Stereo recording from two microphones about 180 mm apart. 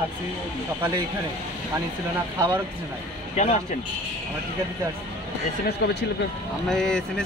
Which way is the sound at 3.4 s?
40° left (ahead or behind).